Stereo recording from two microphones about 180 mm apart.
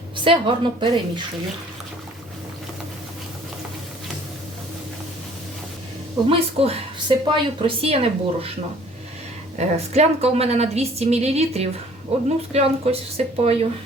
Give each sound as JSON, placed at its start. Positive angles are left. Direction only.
{"t": 0.3, "sound": "a woman's voice", "side_deg": -30}
{"t": 6.2, "sound": "a woman's voice", "side_deg": -35}
{"t": 9.6, "sound": "a woman's voice", "side_deg": -35}